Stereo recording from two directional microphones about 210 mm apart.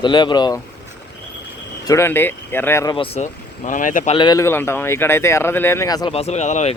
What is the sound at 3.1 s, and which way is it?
Speech, 35° left (ahead or behind).